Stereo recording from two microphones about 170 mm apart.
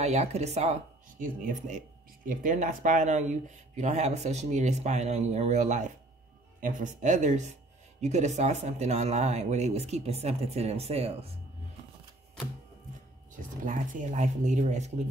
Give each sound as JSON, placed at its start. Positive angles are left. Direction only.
{"t": 0.0, "sound": "speech", "side_deg": -40}
{"t": 1.2, "sound": "speech", "side_deg": -50}
{"t": 13.7, "sound": "speech", "side_deg": -50}